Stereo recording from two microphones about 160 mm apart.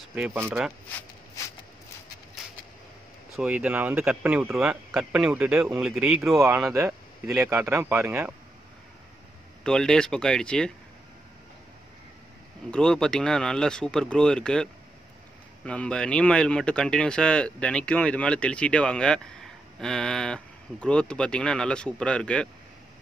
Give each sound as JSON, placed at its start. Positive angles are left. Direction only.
{"t": 0.1, "sound": "speech", "side_deg": -10}
{"t": 3.3, "sound": "speech", "side_deg": -5}
{"t": 6.6, "sound": "speech", "side_deg": -20}
{"t": 9.6, "sound": "speech", "side_deg": 5}
{"t": 12.7, "sound": "speech", "side_deg": 5}